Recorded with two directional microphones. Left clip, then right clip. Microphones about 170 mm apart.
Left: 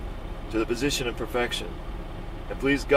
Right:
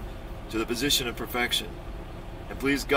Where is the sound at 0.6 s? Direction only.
15° right (ahead or behind).